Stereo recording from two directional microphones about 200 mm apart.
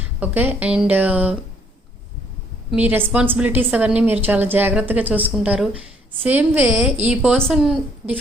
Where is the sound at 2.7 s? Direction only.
10° right (ahead or behind).